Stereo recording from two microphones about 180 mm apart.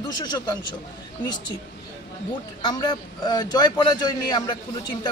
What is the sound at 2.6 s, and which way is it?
A man's voice, 25° left (ahead or behind).